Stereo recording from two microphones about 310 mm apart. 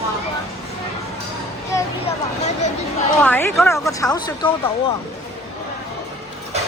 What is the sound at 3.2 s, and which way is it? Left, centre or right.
A woman's voice, centre.